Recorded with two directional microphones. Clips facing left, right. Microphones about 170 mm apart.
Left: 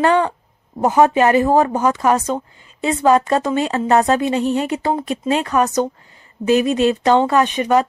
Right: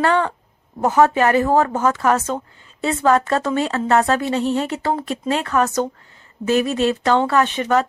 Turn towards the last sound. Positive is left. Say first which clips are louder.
# left 2 dB
turn(degrees=15)  # may be behind; listen again after turning